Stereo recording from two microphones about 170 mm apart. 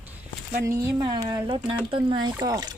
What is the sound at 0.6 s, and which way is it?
Speech, 20° right (ahead or behind).